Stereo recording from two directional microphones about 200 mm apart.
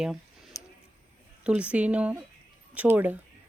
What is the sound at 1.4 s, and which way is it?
Speech, 5° right (ahead or behind).